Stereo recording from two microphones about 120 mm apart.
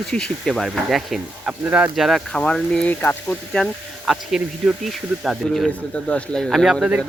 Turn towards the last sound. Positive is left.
turn(degrees=-10)  # may be behind; listen again after turning